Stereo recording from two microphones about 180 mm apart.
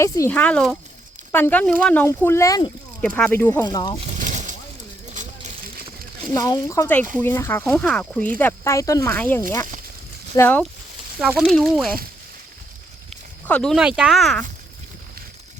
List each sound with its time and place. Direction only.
0.0 s speech: 10° left (ahead or behind)
3.2 s speech: 10° left (ahead or behind)
4.2 s boat: 45° right (ahead or behind)
5.1 s a sound: 45° right (ahead or behind)
6.3 s speech: 20° left (ahead or behind)
11.2 s speech: centre (ahead or behind)
13.5 s speech: 5° left (ahead or behind)